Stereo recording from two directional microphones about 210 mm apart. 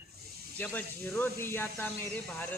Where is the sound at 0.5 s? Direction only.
5° left (ahead or behind).